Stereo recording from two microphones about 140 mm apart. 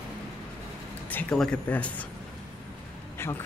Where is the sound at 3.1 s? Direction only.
15° left (ahead or behind).